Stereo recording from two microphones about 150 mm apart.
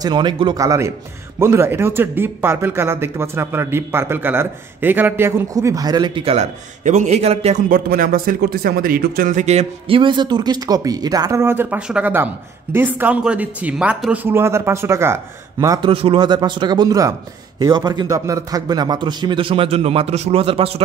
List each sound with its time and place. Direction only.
0.0 s a man's voice: 30° right (ahead or behind)
6.2 s a man's voice: 50° right (ahead or behind)
7.7 s speech: 70° right (ahead or behind)
9.3 s a man's voice: 50° right (ahead or behind); by 15.8 s 20° right (ahead or behind)
15.8 s a man's voice: 35° right (ahead or behind)